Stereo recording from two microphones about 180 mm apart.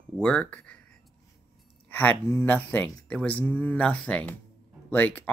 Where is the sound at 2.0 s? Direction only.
10° left (ahead or behind).